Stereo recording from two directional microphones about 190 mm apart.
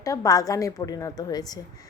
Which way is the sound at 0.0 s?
20° left (ahead or behind).